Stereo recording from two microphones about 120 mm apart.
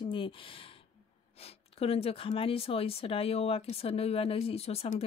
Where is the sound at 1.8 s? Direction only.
55° left (ahead or behind).